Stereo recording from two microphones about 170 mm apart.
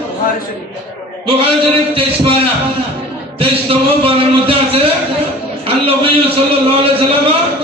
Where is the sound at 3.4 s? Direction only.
35° right (ahead or behind).